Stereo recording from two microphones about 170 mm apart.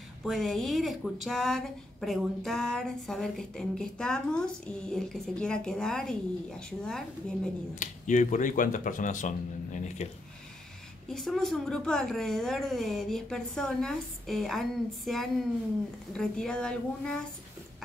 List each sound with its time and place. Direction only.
0.2 s speech: centre (ahead or behind)
7.8 s speech: 45° left (ahead or behind)
11.1 s speech: centre (ahead or behind)